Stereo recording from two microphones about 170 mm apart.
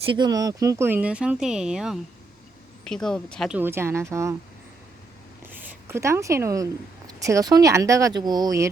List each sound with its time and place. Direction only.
0.0 s speech: 30° right (ahead or behind); by 3.5 s 5° left (ahead or behind)
3.5 s speech: 15° right (ahead or behind)
5.5 s a woman's voice: 10° right (ahead or behind)